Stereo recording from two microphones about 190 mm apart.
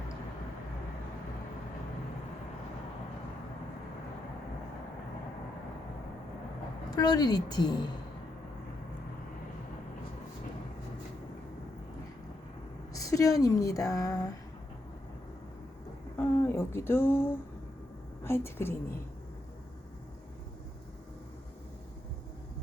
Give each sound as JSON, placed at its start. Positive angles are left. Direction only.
{"t": 6.9, "sound": "a woman's voice", "side_deg": 20}
{"t": 12.9, "sound": "a woman's voice", "side_deg": 15}
{"t": 16.1, "sound": "a woman's voice", "side_deg": 15}